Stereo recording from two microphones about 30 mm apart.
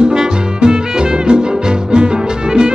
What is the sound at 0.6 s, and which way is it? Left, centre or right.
Music, right.